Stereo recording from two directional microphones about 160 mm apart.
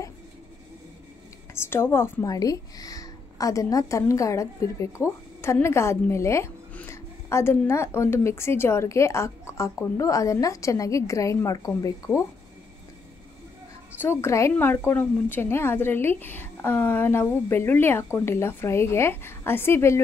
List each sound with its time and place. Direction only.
1.5 s speech: 15° left (ahead or behind)
14.0 s speech: 15° left (ahead or behind)